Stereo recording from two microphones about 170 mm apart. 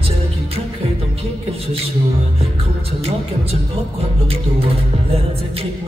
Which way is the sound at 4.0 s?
35° right (ahead or behind).